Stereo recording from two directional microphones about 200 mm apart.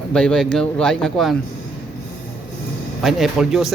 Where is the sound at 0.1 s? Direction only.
5° left (ahead or behind).